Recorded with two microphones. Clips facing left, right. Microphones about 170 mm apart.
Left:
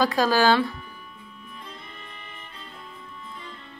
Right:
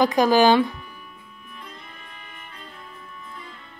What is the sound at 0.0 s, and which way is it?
Speech, 20° right (ahead or behind).